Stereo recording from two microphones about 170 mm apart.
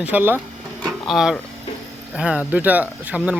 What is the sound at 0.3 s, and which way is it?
Drawer open or close, 5° left (ahead or behind).